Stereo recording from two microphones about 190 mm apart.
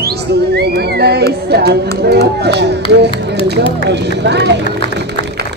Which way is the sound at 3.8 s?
65° right (ahead or behind).